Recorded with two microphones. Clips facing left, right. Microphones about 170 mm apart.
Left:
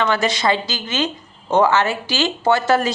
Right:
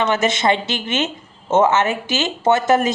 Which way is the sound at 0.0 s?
20° right (ahead or behind).